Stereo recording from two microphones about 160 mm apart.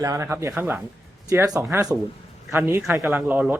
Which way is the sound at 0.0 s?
20° right (ahead or behind).